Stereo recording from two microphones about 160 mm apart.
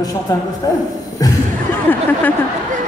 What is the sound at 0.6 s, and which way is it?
Speech, 25° left (ahead or behind).